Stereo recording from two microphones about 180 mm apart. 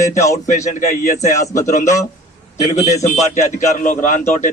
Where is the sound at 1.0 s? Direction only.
40° left (ahead or behind).